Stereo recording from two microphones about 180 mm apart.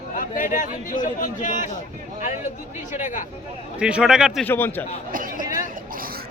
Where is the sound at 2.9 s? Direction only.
45° left (ahead or behind).